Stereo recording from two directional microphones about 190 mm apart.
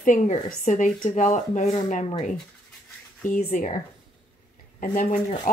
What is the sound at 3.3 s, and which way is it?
Speech, 45° left (ahead or behind).